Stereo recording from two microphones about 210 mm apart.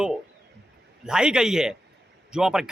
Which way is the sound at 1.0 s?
5° right (ahead or behind).